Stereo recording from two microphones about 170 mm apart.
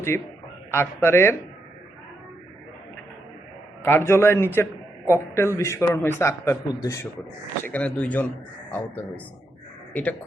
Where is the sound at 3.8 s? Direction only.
15° left (ahead or behind).